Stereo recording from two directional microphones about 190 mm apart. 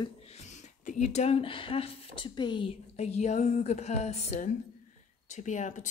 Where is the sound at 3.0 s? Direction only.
35° left (ahead or behind).